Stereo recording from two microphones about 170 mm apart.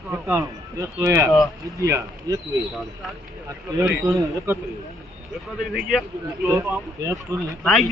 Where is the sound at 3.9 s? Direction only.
20° right (ahead or behind).